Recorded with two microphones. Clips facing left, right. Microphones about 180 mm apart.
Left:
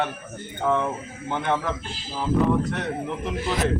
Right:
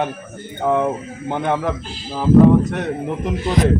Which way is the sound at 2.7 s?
50° right (ahead or behind).